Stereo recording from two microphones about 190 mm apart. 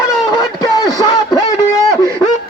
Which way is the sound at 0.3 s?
20° left (ahead or behind).